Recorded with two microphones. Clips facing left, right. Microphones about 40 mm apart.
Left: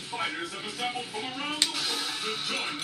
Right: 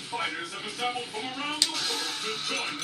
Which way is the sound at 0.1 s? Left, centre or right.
Centre.